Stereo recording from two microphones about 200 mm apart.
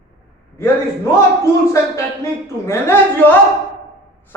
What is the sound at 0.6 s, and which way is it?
Speech, 15° left (ahead or behind).